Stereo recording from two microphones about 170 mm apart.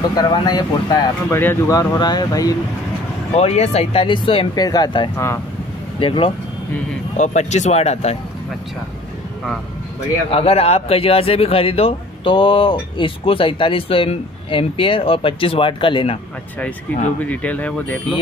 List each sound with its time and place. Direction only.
0.1 s speech: 25° left (ahead or behind)
3.3 s speech: 40° left (ahead or behind); by 5.4 s 15° left (ahead or behind)
5.9 s speech: 30° left (ahead or behind)
7.2 s speech: 45° left (ahead or behind)
10.3 s speech: 35° left (ahead or behind)
17.2 s speech: 10° left (ahead or behind)